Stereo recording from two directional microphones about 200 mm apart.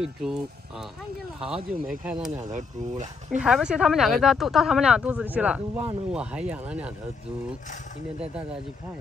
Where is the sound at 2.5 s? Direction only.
35° right (ahead or behind).